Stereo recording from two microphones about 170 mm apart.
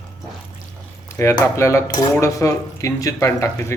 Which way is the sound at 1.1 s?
15° left (ahead or behind).